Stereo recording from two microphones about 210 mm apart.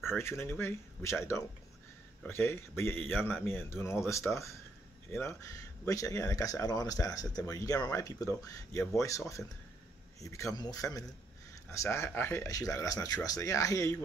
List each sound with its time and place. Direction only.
0.0 s speech: 10° left (ahead or behind)